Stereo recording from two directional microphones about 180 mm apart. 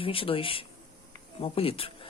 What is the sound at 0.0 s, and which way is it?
Speech, 30° left (ahead or behind).